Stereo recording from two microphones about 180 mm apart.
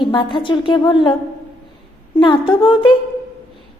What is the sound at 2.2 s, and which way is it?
Speech, 25° left (ahead or behind).